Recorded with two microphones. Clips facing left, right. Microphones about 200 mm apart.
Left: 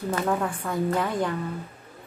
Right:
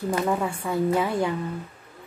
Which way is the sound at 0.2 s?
5° right (ahead or behind).